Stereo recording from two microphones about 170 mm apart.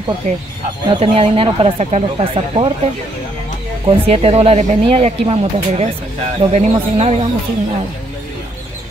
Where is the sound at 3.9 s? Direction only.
35° right (ahead or behind).